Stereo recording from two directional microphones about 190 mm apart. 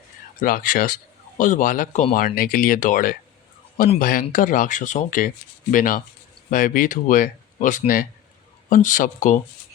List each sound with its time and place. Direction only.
0.4 s speech: 45° left (ahead or behind)